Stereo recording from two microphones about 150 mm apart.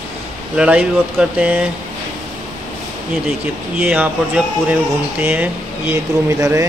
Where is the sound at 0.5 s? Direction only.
5° right (ahead or behind).